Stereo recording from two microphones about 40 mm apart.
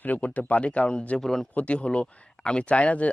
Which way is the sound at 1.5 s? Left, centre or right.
Left.